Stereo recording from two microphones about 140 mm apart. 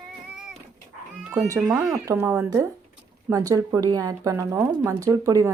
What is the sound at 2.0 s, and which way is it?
Speech, 20° right (ahead or behind).